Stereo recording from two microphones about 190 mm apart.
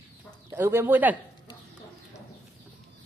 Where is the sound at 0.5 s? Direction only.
10° right (ahead or behind).